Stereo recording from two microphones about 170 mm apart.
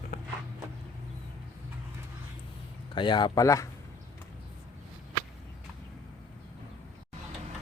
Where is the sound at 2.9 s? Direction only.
25° left (ahead or behind).